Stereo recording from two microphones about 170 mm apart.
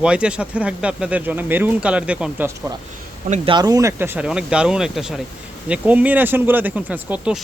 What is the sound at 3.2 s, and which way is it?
Speech, 40° right (ahead or behind).